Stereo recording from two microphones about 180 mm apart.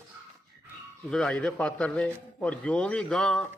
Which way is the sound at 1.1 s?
5° left (ahead or behind).